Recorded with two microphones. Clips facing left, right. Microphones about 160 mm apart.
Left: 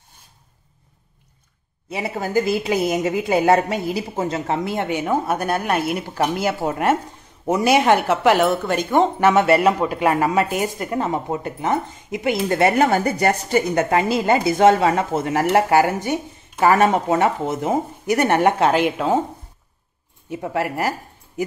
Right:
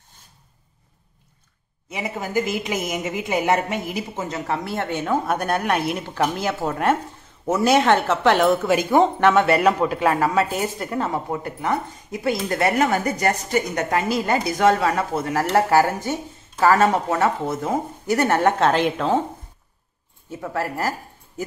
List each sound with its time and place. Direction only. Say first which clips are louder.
1.9 s a woman's voice: left 3 dB; 35° left (ahead or behind); by 9.3 s centre (ahead or behind)
9.3 s a woman's voice: left 2 dB; 10° left (ahead or behind)
20.3 s a woman's voice: left 3 dB; 15° left (ahead or behind)